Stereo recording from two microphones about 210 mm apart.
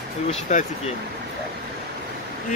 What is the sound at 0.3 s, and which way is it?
Speech, 35° left (ahead or behind).